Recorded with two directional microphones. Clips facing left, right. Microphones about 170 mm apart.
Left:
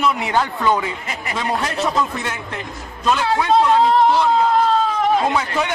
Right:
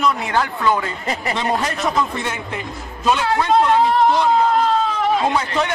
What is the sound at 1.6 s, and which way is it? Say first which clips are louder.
A man's voice: even; centre (ahead or behind).